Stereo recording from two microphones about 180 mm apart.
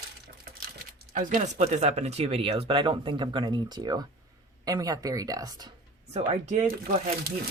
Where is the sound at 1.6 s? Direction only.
35° right (ahead or behind); by 5.7 s 20° right (ahead or behind).